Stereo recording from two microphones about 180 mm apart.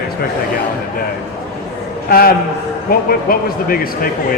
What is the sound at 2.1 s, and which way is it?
Speech, 55° left (ahead or behind).